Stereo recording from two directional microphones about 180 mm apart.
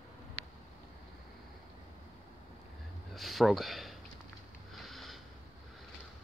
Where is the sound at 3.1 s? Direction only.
Centre (ahead or behind).